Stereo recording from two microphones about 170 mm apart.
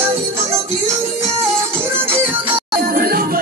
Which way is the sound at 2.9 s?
60° right (ahead or behind).